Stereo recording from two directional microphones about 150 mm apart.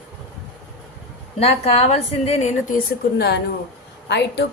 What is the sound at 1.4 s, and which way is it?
A woman's voice, 40° left (ahead or behind).